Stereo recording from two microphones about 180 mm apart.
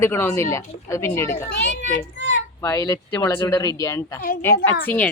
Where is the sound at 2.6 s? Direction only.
15° left (ahead or behind).